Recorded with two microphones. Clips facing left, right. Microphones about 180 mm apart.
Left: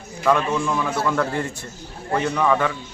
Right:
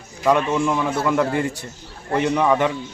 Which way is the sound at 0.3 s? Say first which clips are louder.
Right 2 dB; 15° right (ahead or behind).